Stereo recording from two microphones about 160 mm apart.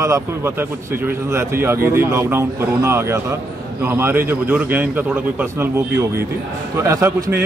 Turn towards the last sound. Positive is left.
turn(degrees=-20)  # may be behind; listen again after turning